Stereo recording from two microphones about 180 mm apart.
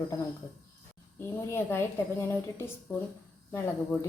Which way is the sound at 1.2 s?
15° left (ahead or behind).